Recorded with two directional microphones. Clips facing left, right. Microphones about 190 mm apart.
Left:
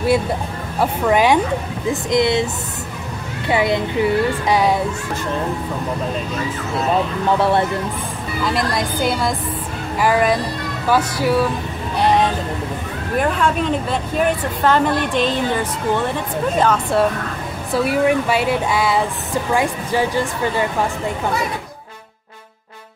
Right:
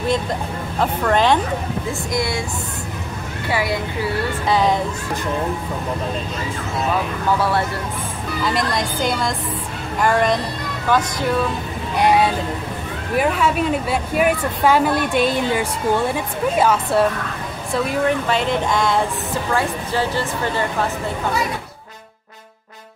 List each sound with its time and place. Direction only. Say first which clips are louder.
0.0 s speech: left 3 dB; 10° left (ahead or behind)
1.9 s speech: left 8 dB; 20° left (ahead or behind)
3.4 s speech: left 4 dB; 20° left (ahead or behind)
7.2 s speech: left 3 dB; 25° left (ahead or behind)
8.5 s a woman's voice: left 1 dB; centre (ahead or behind)
12.0 s vehicle: even; 10° right (ahead or behind)
13.1 s a woman's voice: even; 5° right (ahead or behind)
17.7 s speech: left 3 dB; 10° left (ahead or behind)